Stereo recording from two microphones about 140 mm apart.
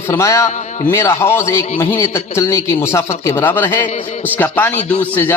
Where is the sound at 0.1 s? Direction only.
20° left (ahead or behind).